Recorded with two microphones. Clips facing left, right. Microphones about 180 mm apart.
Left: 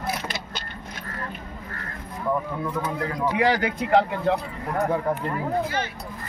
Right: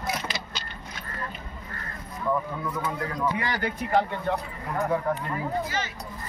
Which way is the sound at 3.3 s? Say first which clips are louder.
Left 7 dB; 80° left.